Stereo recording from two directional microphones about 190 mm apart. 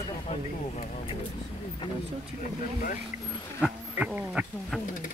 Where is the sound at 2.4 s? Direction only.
40° left (ahead or behind).